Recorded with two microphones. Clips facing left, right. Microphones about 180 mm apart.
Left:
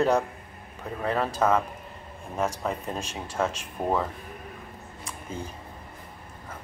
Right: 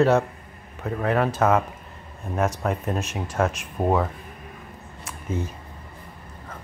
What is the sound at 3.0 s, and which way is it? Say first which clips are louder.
Speech: right 5 dB; 30° left (ahead or behind).